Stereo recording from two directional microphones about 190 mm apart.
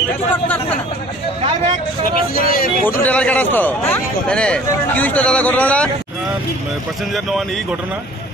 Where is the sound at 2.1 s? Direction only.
50° left (ahead or behind).